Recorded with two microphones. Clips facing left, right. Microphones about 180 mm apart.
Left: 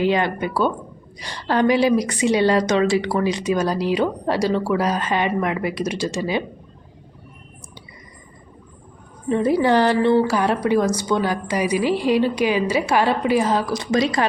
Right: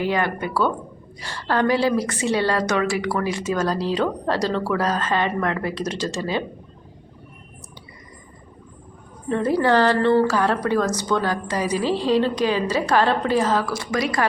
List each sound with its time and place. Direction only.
0.0 s a woman's voice: 20° left (ahead or behind)
9.3 s a woman's voice: 15° left (ahead or behind)